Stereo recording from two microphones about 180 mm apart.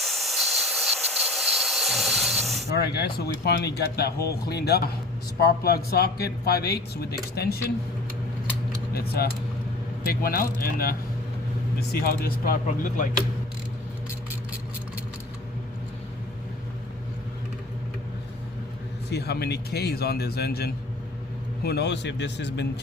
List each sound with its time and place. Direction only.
0.0 s steam: centre (ahead or behind)
2.7 s speech: 65° left (ahead or behind)
8.9 s a man's voice: 60° left (ahead or behind)
19.1 s a man's voice: 65° left (ahead or behind)